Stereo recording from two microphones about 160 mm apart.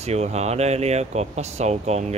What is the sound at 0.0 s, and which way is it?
Speech, 45° right (ahead or behind).